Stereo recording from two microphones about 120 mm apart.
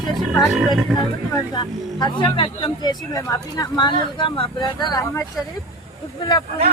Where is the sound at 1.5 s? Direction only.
35° left (ahead or behind).